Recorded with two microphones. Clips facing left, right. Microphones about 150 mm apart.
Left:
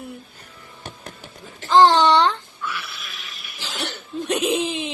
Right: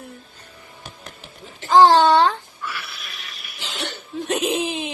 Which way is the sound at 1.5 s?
20° right (ahead or behind).